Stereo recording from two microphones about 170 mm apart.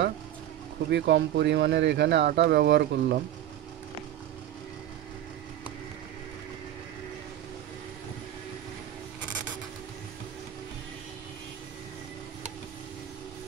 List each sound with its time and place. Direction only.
0.8 s speech: 90° right